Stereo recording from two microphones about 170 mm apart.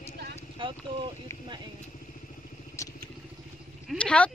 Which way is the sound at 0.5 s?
30° right (ahead or behind).